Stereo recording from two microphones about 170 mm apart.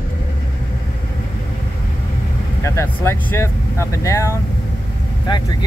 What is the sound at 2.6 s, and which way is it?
Vehicle, 15° left (ahead or behind).